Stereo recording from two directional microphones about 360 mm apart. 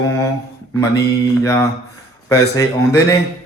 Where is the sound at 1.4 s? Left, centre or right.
Centre.